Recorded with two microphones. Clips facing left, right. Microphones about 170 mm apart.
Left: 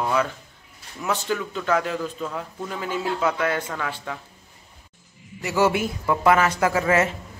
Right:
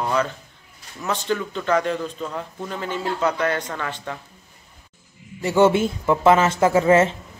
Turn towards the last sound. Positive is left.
turn(degrees=-25)  # may be behind; listen again after turning